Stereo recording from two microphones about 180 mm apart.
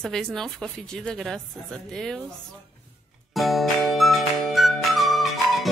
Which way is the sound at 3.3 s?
Centre (ahead or behind).